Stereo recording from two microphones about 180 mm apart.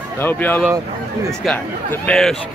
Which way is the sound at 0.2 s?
10° left (ahead or behind).